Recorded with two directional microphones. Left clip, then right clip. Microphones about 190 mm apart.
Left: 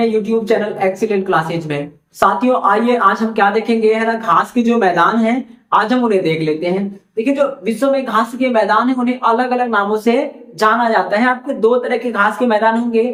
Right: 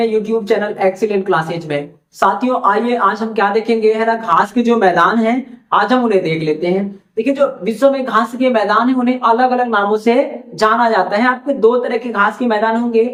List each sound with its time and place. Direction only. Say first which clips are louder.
0.0 s a woman's voice: even; 5° right (ahead or behind)